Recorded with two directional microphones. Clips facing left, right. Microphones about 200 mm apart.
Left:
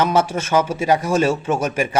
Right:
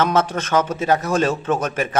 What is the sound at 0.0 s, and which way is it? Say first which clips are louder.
A man's voice: left 1 dB; 10° left (ahead or behind).